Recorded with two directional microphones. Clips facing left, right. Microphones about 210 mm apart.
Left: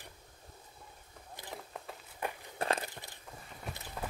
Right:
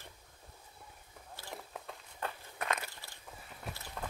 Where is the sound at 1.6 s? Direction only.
Centre (ahead or behind).